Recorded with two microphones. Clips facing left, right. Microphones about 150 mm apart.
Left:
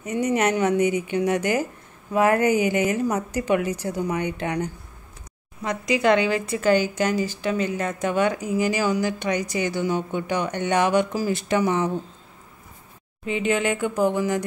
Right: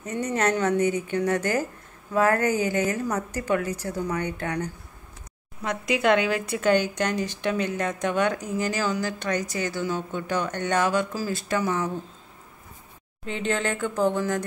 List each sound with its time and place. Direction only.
0.0 s speech: 15° left (ahead or behind)
5.6 s speech: centre (ahead or behind); by 12.0 s 20° left (ahead or behind)
13.2 s speech: 10° left (ahead or behind)